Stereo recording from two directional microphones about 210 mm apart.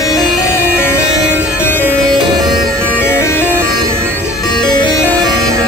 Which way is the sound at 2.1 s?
20° right (ahead or behind).